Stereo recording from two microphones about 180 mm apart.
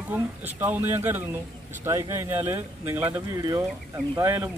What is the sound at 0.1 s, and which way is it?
Speech, 10° right (ahead or behind).